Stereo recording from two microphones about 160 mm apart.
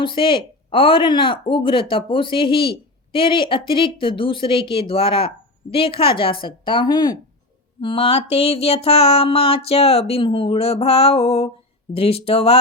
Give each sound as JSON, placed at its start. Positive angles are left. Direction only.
{"t": 0.0, "sound": "speech", "side_deg": 30}